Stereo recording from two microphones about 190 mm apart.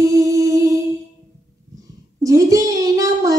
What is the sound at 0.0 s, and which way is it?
Music, 15° right (ahead or behind).